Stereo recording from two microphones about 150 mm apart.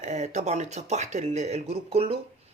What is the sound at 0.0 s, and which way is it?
Speech, 50° right (ahead or behind).